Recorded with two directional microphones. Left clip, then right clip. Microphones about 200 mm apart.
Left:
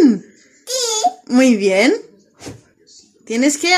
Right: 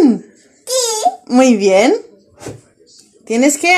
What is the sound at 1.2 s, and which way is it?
Speech, 15° left (ahead or behind).